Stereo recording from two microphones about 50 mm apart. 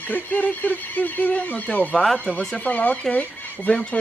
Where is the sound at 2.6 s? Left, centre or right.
Left.